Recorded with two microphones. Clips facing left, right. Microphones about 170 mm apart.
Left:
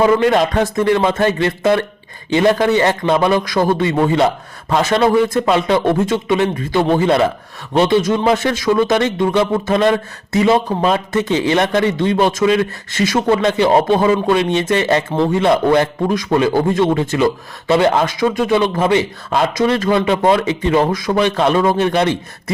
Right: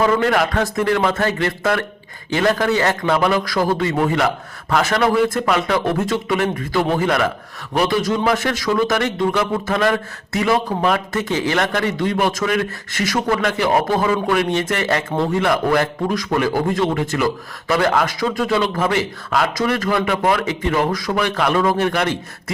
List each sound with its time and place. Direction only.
0.0 s a man's voice: 20° left (ahead or behind)